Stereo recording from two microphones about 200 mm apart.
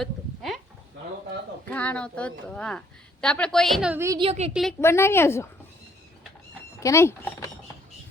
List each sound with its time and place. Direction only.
0.0 s a sound: centre (ahead or behind)
1.6 s a woman's voice: 5° left (ahead or behind)
4.2 s a woman's voice: 30° right (ahead or behind)
4.8 s speech: 15° left (ahead or behind)
6.7 s speech: 15° left (ahead or behind)